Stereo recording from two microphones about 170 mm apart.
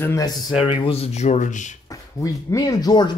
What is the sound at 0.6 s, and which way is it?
Speech, 30° left (ahead or behind).